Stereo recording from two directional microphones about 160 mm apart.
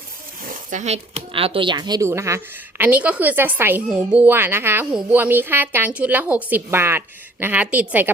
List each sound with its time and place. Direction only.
0.7 s speech: 45° right (ahead or behind); by 8.1 s 10° right (ahead or behind)